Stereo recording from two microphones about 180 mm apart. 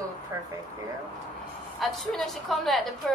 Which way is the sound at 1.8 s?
Centre (ahead or behind).